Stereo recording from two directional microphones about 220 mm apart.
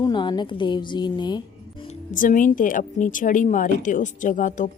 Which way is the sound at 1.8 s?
35° left (ahead or behind).